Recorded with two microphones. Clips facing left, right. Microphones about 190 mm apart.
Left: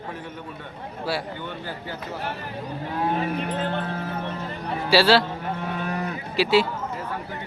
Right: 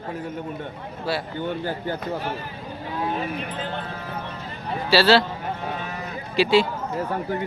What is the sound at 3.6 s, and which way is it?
Speech, 55° left (ahead or behind).